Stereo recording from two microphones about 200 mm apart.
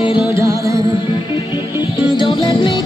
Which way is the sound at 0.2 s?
15° right (ahead or behind).